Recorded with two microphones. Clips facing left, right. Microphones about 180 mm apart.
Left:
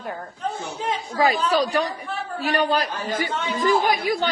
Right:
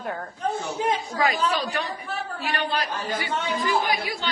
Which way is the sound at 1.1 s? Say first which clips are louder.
Left 9 dB; 35° left (ahead or behind).